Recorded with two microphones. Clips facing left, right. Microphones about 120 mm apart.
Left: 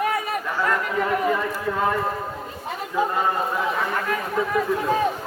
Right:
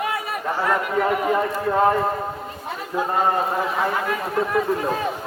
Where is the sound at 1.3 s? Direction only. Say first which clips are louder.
Right 5 dB; 40° right (ahead or behind).